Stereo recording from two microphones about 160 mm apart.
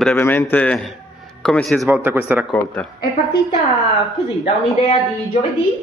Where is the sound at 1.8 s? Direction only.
10° right (ahead or behind).